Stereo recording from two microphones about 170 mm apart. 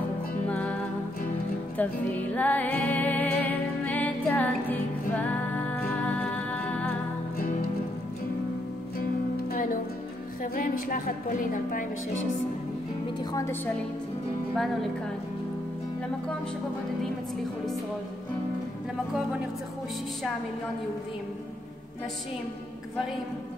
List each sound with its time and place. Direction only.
0.5 s music: 10° left (ahead or behind)
1.8 s music: 10° left (ahead or behind)
9.5 s music: 55° left (ahead or behind)
10.4 s a woman's voice: 55° left (ahead or behind)
13.2 s a woman's voice: 20° left (ahead or behind)
14.5 s speech: centre (ahead or behind)